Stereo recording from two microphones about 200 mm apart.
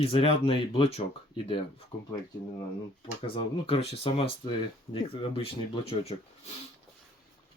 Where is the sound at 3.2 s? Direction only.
25° left (ahead or behind).